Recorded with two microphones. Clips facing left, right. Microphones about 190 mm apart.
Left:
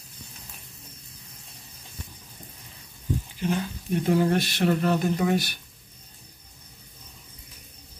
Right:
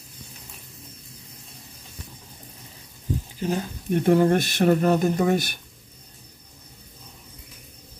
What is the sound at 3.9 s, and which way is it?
Speech, 55° right (ahead or behind).